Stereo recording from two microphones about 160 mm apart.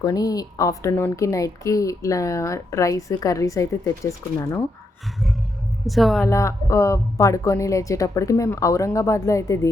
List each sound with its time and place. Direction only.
0.0 s a woman's voice: 20° left (ahead or behind)
5.8 s a woman's voice: centre (ahead or behind)
6.2 s a woman's voice: 20° left (ahead or behind)